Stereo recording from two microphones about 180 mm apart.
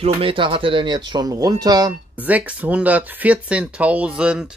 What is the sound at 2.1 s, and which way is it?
Speech, 10° right (ahead or behind).